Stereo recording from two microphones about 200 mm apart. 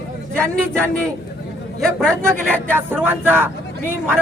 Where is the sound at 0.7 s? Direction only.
5° left (ahead or behind).